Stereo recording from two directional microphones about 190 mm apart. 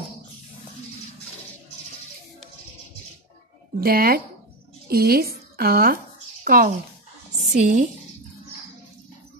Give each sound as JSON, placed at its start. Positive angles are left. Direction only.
{"t": 3.8, "sound": "a woman's voice", "side_deg": -50}